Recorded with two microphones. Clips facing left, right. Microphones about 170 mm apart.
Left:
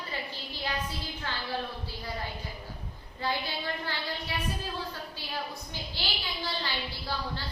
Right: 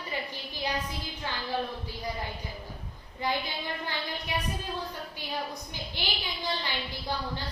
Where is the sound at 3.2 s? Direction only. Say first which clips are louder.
Right 1 dB; 15° right (ahead or behind).